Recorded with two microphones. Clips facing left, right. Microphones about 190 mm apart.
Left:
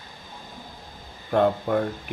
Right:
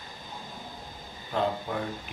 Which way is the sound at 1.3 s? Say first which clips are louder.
Left 8 dB; 55° left (ahead or behind).